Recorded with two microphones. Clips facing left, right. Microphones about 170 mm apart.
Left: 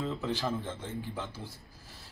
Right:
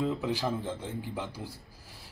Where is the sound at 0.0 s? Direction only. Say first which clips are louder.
Right 3 dB; 10° right (ahead or behind).